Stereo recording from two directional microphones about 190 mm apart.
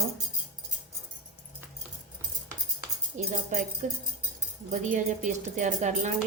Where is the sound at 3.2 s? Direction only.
40° right (ahead or behind).